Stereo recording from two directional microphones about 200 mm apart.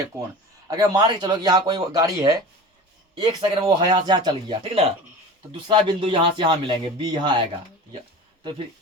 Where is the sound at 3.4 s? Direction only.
25° right (ahead or behind).